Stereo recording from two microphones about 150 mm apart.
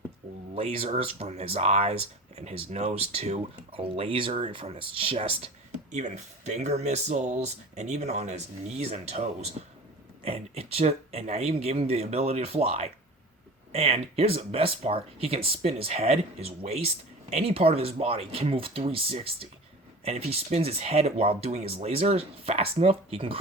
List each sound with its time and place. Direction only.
0.5 s speech: 40° right (ahead or behind)